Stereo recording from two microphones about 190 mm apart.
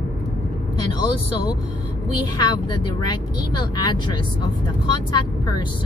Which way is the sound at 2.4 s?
25° left (ahead or behind).